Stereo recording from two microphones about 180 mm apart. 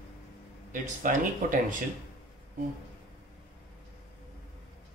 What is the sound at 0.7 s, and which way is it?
Speech, 50° right (ahead or behind).